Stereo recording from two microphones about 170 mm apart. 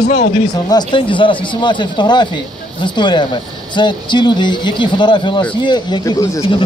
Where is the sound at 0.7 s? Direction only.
25° left (ahead or behind).